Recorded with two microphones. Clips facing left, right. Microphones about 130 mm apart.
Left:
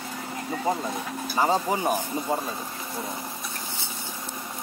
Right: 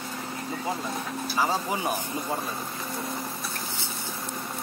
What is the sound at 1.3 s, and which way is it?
Speech, 20° left (ahead or behind).